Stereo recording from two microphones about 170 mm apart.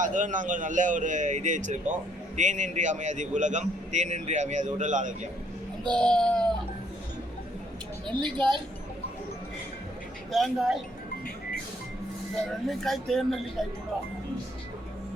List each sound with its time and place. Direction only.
0.0 s a man's voice: 50° right (ahead or behind)
5.8 s speech: 5° left (ahead or behind)
10.3 s speech: centre (ahead or behind)
12.4 s speech: centre (ahead or behind)